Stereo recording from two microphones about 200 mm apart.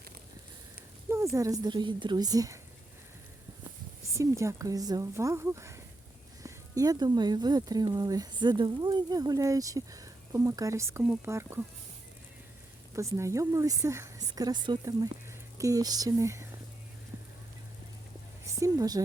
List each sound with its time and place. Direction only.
1.1 s speech: 15° right (ahead or behind)
4.1 s speech: 15° right (ahead or behind)
12.9 s speech: 15° right (ahead or behind)
18.6 s speech: 15° right (ahead or behind)